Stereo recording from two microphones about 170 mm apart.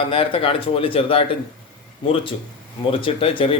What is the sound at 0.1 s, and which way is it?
Speech, 30° left (ahead or behind).